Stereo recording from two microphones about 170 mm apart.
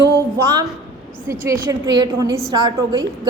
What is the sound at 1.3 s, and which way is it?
A woman's voice, 20° right (ahead or behind).